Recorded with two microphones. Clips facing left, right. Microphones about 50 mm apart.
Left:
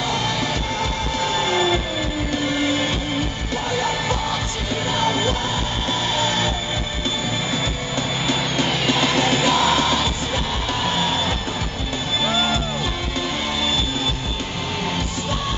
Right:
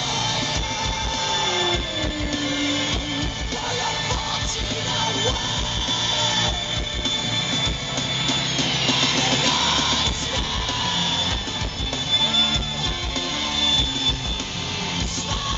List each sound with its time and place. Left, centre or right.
0.1 s music: centre
8.3 s music: centre